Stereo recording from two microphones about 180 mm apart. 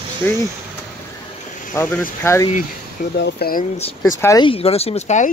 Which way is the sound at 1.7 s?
15° left (ahead or behind).